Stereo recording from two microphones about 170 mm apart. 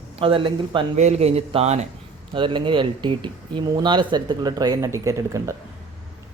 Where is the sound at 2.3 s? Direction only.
30° right (ahead or behind).